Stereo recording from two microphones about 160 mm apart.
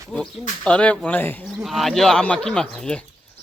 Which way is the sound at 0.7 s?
5° left (ahead or behind).